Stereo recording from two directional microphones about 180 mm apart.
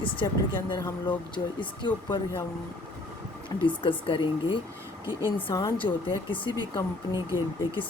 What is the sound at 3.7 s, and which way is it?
Speech, 30° left (ahead or behind).